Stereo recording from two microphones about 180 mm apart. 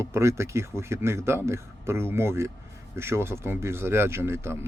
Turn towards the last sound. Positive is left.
turn(degrees=-15)  # may be behind; listen again after turning